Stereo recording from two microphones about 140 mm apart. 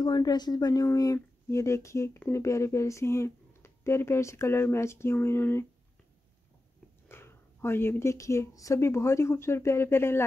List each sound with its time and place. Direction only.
0.0 s speech: 30° left (ahead or behind)
7.1 s speech: 15° left (ahead or behind)